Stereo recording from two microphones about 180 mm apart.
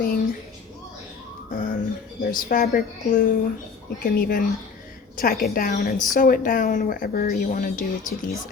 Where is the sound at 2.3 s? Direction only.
50° left (ahead or behind).